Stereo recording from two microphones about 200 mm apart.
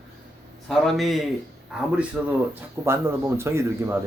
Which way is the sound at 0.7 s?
Centre (ahead or behind).